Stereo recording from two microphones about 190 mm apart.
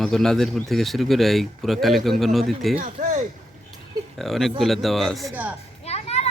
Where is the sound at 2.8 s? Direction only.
40° right (ahead or behind).